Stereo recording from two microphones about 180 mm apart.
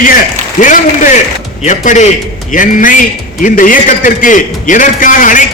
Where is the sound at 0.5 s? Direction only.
45° left (ahead or behind).